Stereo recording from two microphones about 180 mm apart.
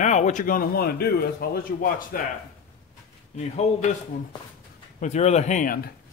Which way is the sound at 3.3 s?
40° left (ahead or behind).